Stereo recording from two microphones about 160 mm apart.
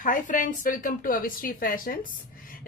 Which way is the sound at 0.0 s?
55° left (ahead or behind).